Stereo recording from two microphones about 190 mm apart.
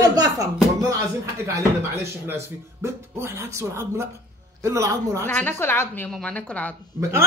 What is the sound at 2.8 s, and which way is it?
A man's voice, 15° right (ahead or behind).